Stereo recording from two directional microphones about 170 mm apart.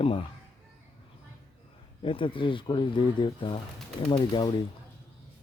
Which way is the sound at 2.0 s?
30° left (ahead or behind).